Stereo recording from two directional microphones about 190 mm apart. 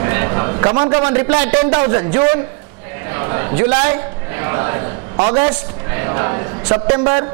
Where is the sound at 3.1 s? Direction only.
20° right (ahead or behind).